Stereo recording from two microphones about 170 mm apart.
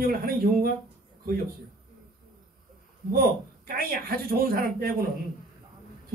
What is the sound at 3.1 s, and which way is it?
Speech, 60° right (ahead or behind).